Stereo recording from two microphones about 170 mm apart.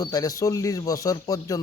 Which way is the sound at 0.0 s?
20° left (ahead or behind).